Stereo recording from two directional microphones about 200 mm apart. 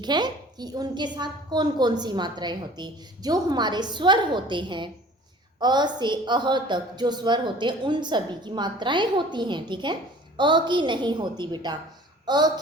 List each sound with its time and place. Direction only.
0.0 s a woman's voice: 20° right (ahead or behind)